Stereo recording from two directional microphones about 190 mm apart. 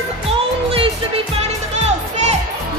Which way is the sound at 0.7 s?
30° right (ahead or behind).